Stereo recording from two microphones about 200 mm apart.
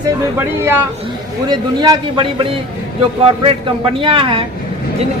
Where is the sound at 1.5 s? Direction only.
20° right (ahead or behind).